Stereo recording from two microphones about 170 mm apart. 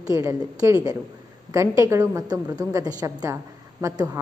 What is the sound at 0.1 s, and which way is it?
A woman's voice, 20° right (ahead or behind).